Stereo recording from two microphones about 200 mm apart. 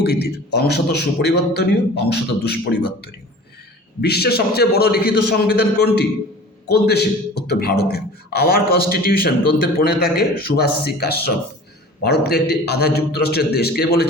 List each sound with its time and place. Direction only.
0.0 s a man's voice: 55° left (ahead or behind)